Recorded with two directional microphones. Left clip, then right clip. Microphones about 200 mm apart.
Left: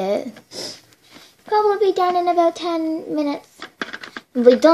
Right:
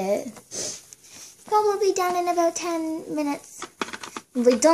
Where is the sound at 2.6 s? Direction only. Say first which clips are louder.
Left 5 dB; 20° left (ahead or behind).